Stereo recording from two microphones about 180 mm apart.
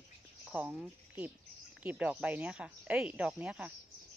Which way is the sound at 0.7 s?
Centre (ahead or behind).